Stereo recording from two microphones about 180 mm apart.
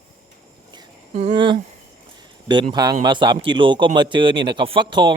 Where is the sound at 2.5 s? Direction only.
25° right (ahead or behind).